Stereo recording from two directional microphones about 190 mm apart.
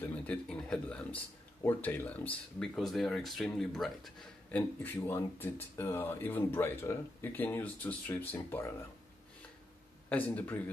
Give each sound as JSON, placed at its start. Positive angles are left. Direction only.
{"t": 0.0, "sound": "speech", "side_deg": 5}
{"t": 10.0, "sound": "speech", "side_deg": 10}